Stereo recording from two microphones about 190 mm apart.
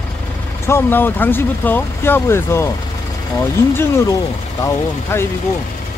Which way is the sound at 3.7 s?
15° left (ahead or behind).